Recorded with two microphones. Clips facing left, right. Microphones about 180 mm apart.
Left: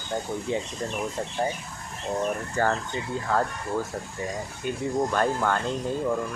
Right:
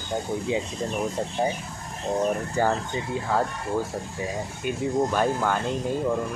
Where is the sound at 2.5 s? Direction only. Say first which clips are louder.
Right 2 dB; 10° right (ahead or behind).